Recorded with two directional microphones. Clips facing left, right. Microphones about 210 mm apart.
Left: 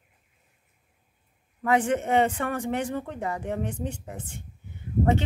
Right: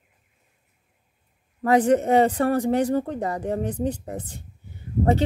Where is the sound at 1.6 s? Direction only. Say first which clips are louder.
Right 6 dB; 35° right (ahead or behind).